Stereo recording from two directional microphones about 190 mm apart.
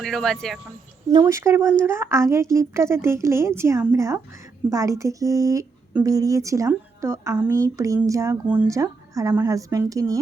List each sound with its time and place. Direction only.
0.0 s speech: centre (ahead or behind)
1.2 s a woman's voice: 15° right (ahead or behind)